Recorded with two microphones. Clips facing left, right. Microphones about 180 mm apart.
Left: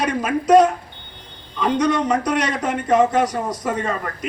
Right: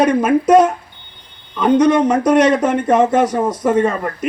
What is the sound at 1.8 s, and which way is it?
Speech, 50° right (ahead or behind).